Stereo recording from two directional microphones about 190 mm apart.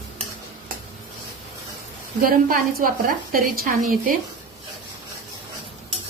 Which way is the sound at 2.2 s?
50° right (ahead or behind).